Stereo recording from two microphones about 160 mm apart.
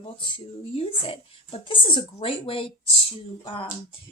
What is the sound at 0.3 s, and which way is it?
A woman's voice, 35° left (ahead or behind).